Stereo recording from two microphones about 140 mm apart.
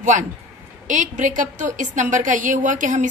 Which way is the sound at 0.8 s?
65° right (ahead or behind).